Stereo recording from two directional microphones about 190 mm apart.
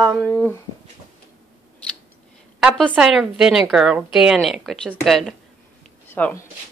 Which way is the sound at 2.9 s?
Centre (ahead or behind).